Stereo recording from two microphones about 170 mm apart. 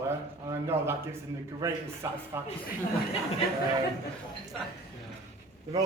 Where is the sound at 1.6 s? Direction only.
15° right (ahead or behind).